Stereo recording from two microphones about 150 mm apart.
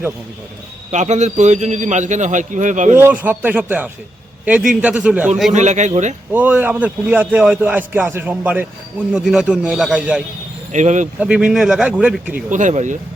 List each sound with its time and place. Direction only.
0.9 s a man's voice: 50° right (ahead or behind)
3.0 s a man's voice: 10° right (ahead or behind)
5.5 s a man's voice: 50° right (ahead or behind)
6.3 s a man's voice: 10° right (ahead or behind)
10.7 s a man's voice: 55° right (ahead or behind)
11.2 s a man's voice: 5° right (ahead or behind)
12.3 s speech: 55° right (ahead or behind)